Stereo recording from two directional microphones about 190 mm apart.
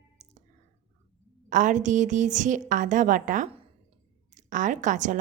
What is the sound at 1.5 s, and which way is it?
Speech, 40° right (ahead or behind).